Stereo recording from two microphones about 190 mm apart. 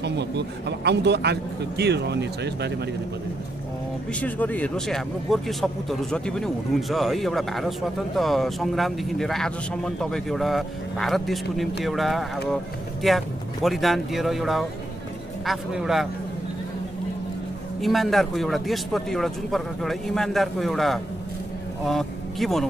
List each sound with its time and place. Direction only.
0.0 s speech: 65° right (ahead or behind)
4.1 s speech: 10° left (ahead or behind)
17.7 s speech: centre (ahead or behind)